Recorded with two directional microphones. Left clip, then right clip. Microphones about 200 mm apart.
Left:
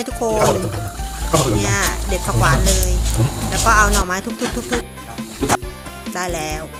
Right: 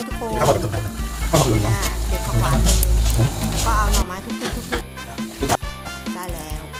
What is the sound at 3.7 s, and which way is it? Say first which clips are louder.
Speech: left 9 dB; 20° left (ahead or behind).